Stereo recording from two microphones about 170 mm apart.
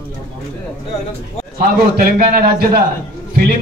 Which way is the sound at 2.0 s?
60° right (ahead or behind).